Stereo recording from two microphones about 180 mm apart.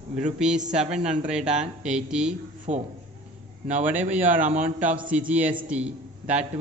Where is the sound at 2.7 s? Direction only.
40° right (ahead or behind).